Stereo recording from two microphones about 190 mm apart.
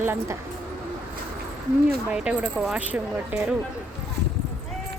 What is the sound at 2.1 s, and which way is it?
Speech, 5° right (ahead or behind).